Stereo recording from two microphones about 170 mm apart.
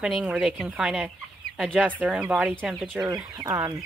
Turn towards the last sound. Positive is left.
turn(degrees=-20)  # may be behind; listen again after turning